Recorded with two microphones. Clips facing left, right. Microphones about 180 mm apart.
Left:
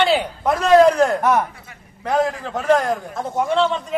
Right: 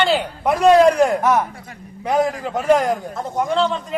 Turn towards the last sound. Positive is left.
turn(degrees=0)  # may be behind; listen again after turning